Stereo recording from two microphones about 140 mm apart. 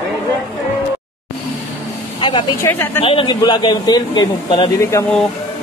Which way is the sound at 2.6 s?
15° left (ahead or behind).